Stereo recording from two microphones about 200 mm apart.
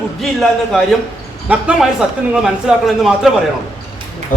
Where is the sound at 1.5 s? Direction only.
5° right (ahead or behind).